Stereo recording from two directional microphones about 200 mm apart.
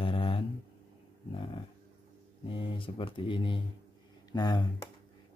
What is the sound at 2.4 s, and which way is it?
Speech, 25° left (ahead or behind).